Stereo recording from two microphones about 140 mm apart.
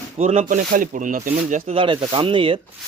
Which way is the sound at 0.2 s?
50° right (ahead or behind).